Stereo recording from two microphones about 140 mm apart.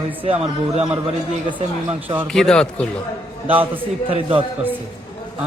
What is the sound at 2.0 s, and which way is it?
Speech, 15° right (ahead or behind).